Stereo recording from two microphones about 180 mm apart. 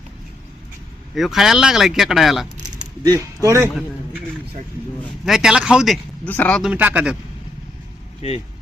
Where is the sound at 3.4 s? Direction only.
15° right (ahead or behind).